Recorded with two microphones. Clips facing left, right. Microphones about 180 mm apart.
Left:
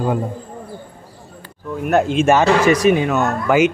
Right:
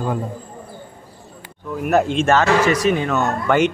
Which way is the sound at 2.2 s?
15° left (ahead or behind).